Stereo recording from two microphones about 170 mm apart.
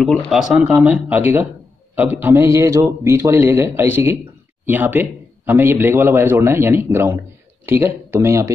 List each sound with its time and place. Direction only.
0.0 s a man's voice: centre (ahead or behind); by 8.5 s 15° right (ahead or behind)